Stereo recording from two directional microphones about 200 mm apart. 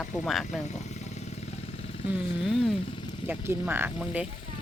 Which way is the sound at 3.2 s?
10° right (ahead or behind).